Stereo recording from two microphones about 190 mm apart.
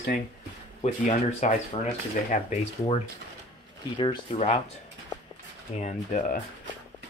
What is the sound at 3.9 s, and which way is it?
Speech, 25° left (ahead or behind).